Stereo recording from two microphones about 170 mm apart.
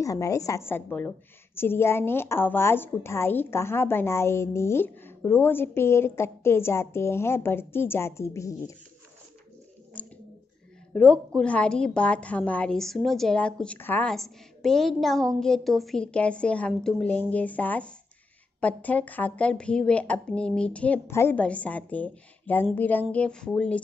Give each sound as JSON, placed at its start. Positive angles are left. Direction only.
{"t": 0.0, "sound": "a woman's voice", "side_deg": 20}
{"t": 10.0, "sound": "a sound", "side_deg": 5}
{"t": 10.9, "sound": "a woman's voice", "side_deg": 5}